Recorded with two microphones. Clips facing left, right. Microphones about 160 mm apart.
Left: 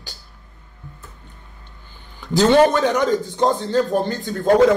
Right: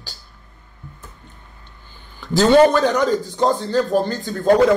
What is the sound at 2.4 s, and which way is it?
A man's voice, 20° left (ahead or behind).